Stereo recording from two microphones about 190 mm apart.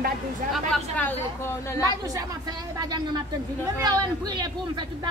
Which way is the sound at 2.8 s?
20° right (ahead or behind).